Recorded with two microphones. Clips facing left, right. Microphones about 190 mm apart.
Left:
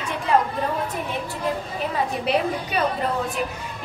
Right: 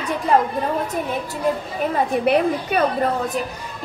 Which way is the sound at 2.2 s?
55° right (ahead or behind).